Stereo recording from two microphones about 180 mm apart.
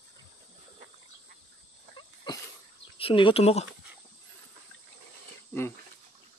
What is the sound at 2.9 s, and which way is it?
Speech, 30° left (ahead or behind).